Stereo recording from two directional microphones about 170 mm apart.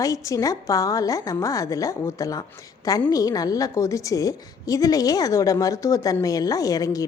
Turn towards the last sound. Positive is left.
turn(degrees=20)  # may be behind; listen again after turning